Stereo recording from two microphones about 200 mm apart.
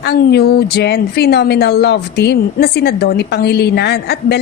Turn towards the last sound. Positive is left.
turn(degrees=55)  # may be behind; listen again after turning